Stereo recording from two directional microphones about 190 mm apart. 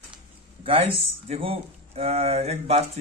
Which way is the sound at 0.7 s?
30° right (ahead or behind).